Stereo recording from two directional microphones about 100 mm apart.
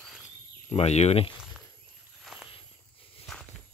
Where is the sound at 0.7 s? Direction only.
90° left.